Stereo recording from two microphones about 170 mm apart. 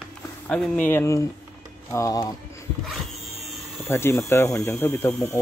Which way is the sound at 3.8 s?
15° left (ahead or behind).